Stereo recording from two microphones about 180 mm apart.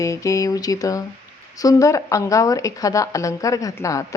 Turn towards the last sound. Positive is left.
turn(degrees=20)  # may be behind; listen again after turning